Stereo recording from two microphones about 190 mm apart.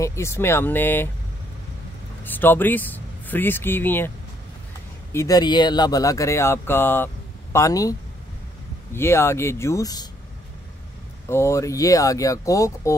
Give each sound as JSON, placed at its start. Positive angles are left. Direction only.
{"t": 0.0, "sound": "speech", "side_deg": 15}
{"t": 2.2, "sound": "speech", "side_deg": 10}
{"t": 5.1, "sound": "speech", "side_deg": 20}
{"t": 8.9, "sound": "speech", "side_deg": 15}
{"t": 11.2, "sound": "speech", "side_deg": 15}